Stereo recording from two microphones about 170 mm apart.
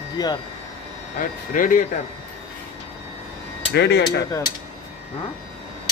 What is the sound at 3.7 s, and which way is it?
Speech, 80° left.